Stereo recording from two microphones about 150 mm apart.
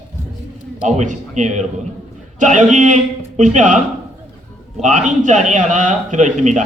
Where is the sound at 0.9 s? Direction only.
55° right (ahead or behind).